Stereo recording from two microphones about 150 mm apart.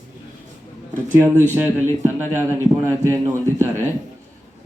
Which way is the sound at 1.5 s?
10° right (ahead or behind).